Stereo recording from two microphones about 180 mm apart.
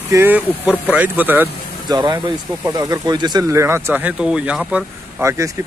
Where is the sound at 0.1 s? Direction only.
10° right (ahead or behind).